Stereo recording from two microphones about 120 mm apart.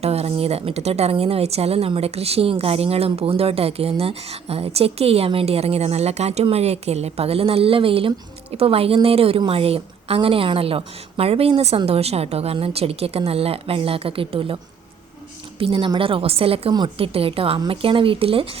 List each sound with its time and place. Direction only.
0.0 s a woman's voice: 60° right (ahead or behind)